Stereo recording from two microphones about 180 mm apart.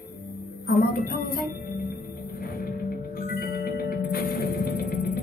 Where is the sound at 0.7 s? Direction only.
55° left (ahead or behind).